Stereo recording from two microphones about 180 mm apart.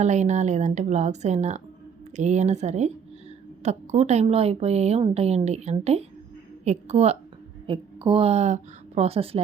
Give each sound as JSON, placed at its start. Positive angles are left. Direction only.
{"t": 0.0, "sound": "a woman's voice", "side_deg": -40}